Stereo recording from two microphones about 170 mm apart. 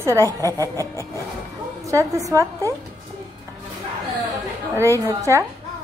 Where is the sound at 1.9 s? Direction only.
20° right (ahead or behind).